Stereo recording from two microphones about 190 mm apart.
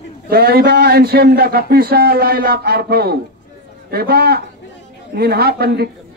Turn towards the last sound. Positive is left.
turn(degrees=-55)  # may be behind; listen again after turning